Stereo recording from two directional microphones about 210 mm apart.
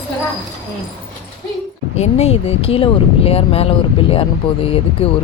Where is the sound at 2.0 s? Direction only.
30° left (ahead or behind).